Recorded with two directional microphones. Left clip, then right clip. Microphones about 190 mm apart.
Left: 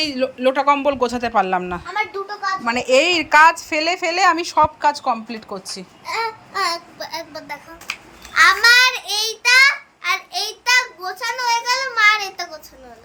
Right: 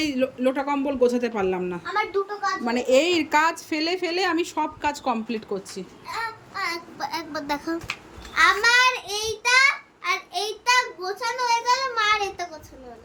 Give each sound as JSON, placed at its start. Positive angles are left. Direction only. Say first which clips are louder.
{"t": 0.0, "sound": "a woman's voice", "louder": "left 5 dB", "side_deg": 0}
{"t": 1.9, "sound": "a sound", "louder": "even", "side_deg": 50}
{"t": 2.6, "sound": "a woman's voice", "louder": "left 5 dB", "side_deg": -5}
{"t": 7.0, "sound": "a woman's voice", "louder": "even", "side_deg": -5}